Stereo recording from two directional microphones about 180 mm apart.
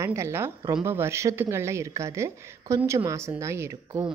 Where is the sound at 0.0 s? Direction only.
15° right (ahead or behind).